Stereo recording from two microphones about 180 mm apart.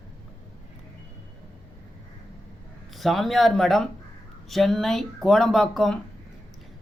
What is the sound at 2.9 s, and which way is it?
A man's voice, centre (ahead or behind).